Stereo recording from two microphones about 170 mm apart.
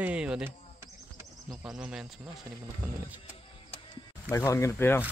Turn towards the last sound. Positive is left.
turn(degrees=15)  # may be behind; listen again after turning